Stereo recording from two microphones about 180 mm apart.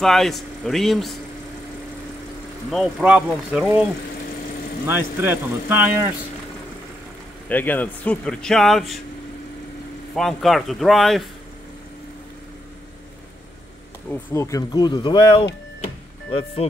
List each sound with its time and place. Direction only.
0.0 s a man's voice: centre (ahead or behind)
2.7 s a man's voice: centre (ahead or behind)
4.8 s speech: 10° right (ahead or behind)
7.4 s a man's voice: 10° left (ahead or behind)
10.1 s a man's voice: centre (ahead or behind)
14.1 s speech: 15° left (ahead or behind)
15.8 s music: 35° left (ahead or behind)